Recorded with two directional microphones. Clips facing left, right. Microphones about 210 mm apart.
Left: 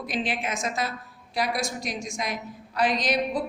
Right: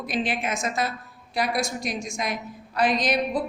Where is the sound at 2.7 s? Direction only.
50° right (ahead or behind).